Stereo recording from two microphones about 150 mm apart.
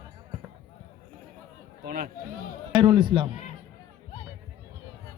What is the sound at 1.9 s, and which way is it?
Speech, 65° right (ahead or behind).